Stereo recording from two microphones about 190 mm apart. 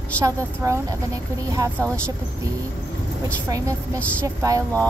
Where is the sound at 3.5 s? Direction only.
15° right (ahead or behind).